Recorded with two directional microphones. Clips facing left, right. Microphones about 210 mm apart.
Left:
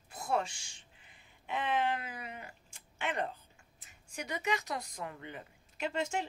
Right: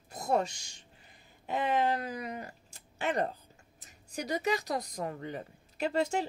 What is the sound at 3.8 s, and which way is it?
Speech, 40° right (ahead or behind).